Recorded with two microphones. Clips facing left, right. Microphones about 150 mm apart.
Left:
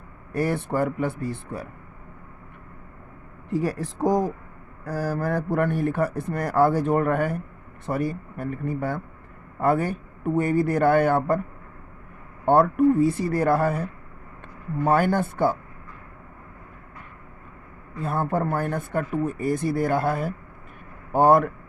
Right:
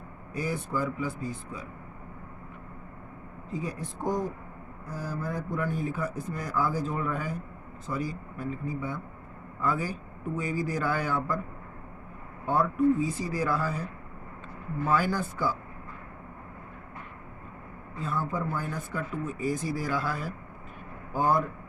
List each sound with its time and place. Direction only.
0.3 s a man's voice: 65° left (ahead or behind)
3.5 s speech: 75° left (ahead or behind); by 4.1 s 90° left
4.9 s a man's voice: 75° left (ahead or behind)
9.6 s a man's voice: 60° left (ahead or behind)
12.5 s a man's voice: 65° left (ahead or behind)
18.0 s a man's voice: 60° left (ahead or behind)
21.1 s speech: 65° left (ahead or behind)